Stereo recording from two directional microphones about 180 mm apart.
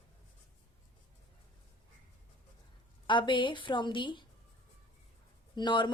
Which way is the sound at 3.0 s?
25° left (ahead or behind).